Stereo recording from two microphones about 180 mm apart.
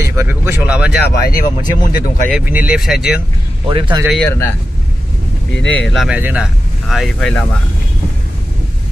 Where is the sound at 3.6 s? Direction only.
25° right (ahead or behind).